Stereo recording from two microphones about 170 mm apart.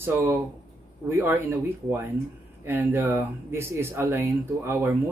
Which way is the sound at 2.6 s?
15° right (ahead or behind).